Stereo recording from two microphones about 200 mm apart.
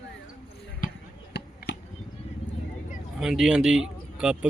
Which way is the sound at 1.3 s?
55° left (ahead or behind).